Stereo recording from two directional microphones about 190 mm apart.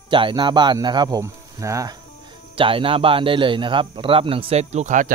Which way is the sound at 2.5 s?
30° right (ahead or behind).